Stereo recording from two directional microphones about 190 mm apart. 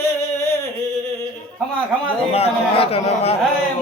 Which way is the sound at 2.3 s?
30° left (ahead or behind).